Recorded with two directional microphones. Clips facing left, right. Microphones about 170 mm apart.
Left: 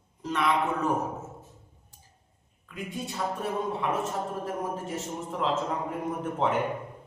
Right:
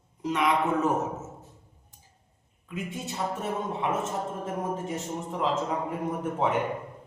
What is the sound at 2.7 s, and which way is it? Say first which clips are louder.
A man's voice: right 1 dB; 20° right (ahead or behind).